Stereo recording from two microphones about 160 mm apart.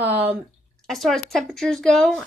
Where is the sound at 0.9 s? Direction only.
Centre (ahead or behind).